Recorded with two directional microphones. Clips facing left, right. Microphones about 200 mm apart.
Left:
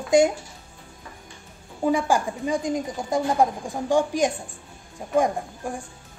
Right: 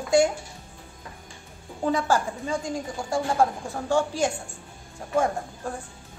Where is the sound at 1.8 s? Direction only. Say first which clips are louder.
Left 2 dB; 10° left (ahead or behind).